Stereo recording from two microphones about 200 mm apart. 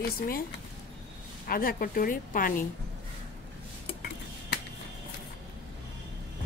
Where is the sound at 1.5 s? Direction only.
45° left (ahead or behind).